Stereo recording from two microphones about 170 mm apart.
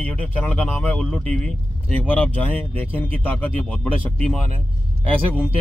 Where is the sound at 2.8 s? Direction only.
10° left (ahead or behind).